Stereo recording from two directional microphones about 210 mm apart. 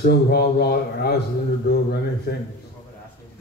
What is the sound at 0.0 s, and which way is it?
A man's voice, 50° left (ahead or behind).